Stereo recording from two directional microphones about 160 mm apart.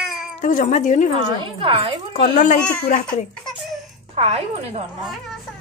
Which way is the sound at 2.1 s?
50° left (ahead or behind).